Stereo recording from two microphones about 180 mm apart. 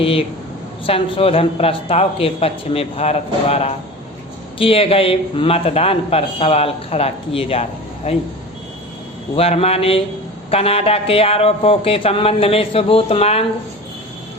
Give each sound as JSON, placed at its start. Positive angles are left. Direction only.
{"t": 0.0, "sound": "a man's voice", "side_deg": 30}
{"t": 9.3, "sound": "a man's voice", "side_deg": 35}